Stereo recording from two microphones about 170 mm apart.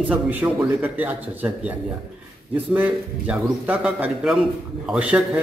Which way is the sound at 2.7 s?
10° right (ahead or behind).